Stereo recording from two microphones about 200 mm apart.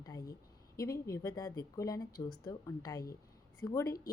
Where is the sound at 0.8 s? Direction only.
15° left (ahead or behind).